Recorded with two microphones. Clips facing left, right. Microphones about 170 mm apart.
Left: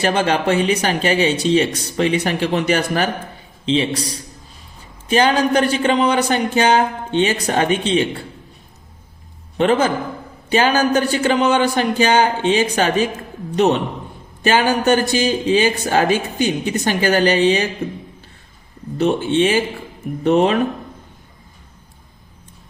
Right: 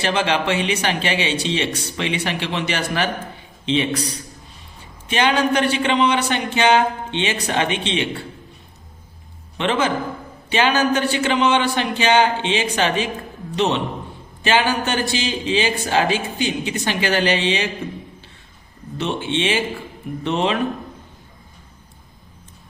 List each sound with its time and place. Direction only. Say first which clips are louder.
0.0 s speech: left 3 dB; 45° left (ahead or behind)
3.7 s speech: left 2 dB; 35° left (ahead or behind)
9.6 s speech: left 4 dB; 40° left (ahead or behind)
18.9 s speech: left 7 dB; 45° left (ahead or behind)